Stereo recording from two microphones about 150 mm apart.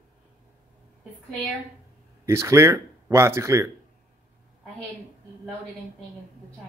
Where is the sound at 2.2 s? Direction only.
20° right (ahead or behind).